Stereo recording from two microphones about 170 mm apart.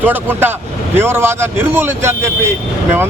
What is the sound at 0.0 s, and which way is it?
Speech, 10° right (ahead or behind).